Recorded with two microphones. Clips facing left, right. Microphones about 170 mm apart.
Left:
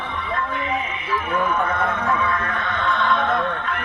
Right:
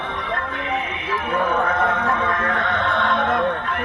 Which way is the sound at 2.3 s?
90° right.